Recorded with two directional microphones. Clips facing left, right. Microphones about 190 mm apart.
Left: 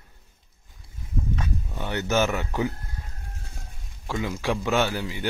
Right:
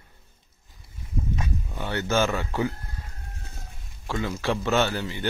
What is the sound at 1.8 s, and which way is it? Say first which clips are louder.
Speech: even; 15° left (ahead or behind).